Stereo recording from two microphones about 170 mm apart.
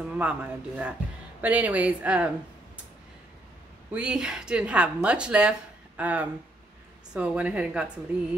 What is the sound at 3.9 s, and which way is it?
Speech, 5° right (ahead or behind).